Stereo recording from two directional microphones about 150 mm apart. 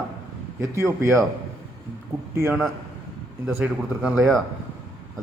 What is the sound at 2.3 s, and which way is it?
A man's voice, 15° right (ahead or behind).